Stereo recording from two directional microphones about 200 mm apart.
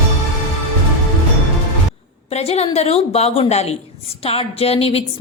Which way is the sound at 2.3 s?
30° left (ahead or behind).